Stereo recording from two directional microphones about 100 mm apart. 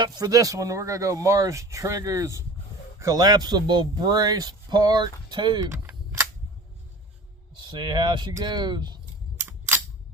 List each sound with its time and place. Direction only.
0.0 s speech: 40° right (ahead or behind)
7.6 s speech: 50° right (ahead or behind)
9.5 s camera: 25° right (ahead or behind)